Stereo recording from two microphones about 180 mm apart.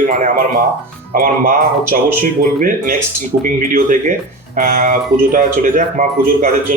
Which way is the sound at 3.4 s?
50° right (ahead or behind).